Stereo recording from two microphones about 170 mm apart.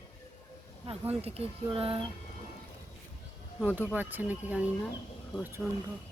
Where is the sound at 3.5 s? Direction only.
10° right (ahead or behind).